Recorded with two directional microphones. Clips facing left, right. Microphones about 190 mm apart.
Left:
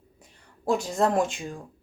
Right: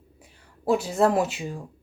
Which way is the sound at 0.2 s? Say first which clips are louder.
Even; 5° right (ahead or behind).